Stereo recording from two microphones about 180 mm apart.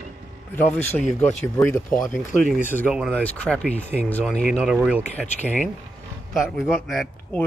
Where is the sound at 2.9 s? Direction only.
5° left (ahead or behind).